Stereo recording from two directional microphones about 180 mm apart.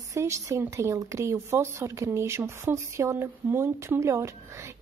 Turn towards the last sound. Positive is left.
turn(degrees=-15)  # may be behind; listen again after turning